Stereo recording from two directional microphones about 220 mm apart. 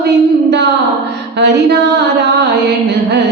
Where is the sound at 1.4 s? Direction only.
50° right (ahead or behind).